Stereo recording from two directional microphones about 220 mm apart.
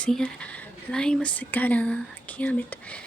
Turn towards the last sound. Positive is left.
turn(degrees=5)  # may be behind; listen again after turning